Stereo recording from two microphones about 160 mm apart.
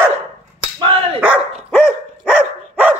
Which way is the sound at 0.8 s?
30° right (ahead or behind).